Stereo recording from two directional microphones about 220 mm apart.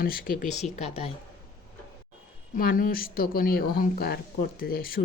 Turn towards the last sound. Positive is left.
turn(degrees=40)  # may be behind; listen again after turning